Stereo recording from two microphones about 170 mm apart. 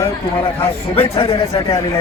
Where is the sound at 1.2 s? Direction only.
35° left (ahead or behind).